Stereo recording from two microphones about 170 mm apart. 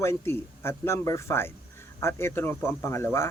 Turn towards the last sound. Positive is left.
turn(degrees=15)  # may be behind; listen again after turning